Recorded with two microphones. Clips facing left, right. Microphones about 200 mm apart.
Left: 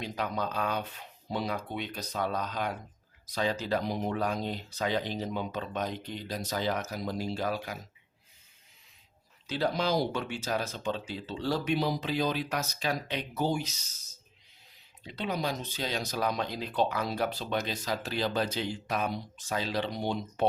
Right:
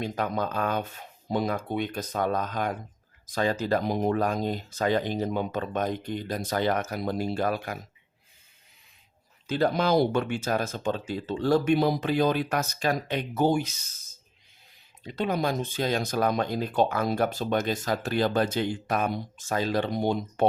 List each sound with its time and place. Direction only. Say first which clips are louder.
0.0 s speech: right 4 dB; 50° right (ahead or behind)
9.5 s speech: right 5 dB; 50° right (ahead or behind)
15.0 s speech: right 5 dB; 45° right (ahead or behind)